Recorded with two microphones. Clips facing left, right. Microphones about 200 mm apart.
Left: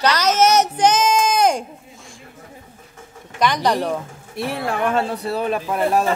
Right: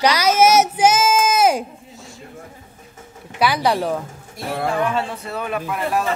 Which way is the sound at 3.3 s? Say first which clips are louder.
Even; 5° right (ahead or behind).